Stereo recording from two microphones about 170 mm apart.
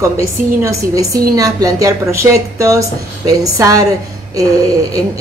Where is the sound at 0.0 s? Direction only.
20° right (ahead or behind).